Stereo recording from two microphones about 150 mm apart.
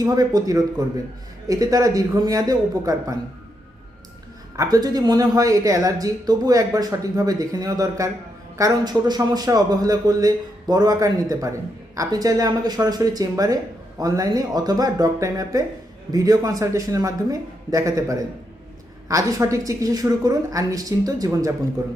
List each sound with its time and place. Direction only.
0.0 s speech: 25° right (ahead or behind)
4.5 s speech: 25° right (ahead or behind)